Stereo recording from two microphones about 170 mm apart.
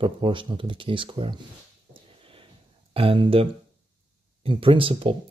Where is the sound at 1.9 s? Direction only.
30° right (ahead or behind).